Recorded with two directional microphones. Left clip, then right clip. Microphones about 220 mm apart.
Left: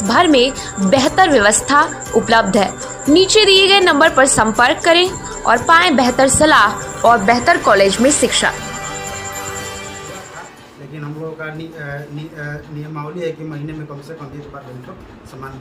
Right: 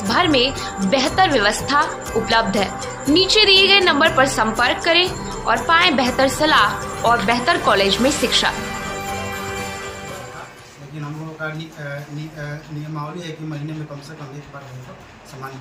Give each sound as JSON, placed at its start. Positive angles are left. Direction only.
{"t": 0.1, "sound": "a woman's voice", "side_deg": 30}